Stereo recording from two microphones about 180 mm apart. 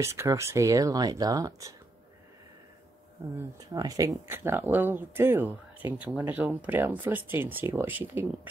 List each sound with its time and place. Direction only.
0.0 s speech: 15° right (ahead or behind)
3.3 s speech: 20° right (ahead or behind)